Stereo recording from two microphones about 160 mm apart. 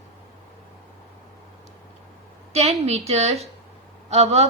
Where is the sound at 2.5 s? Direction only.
40° right (ahead or behind).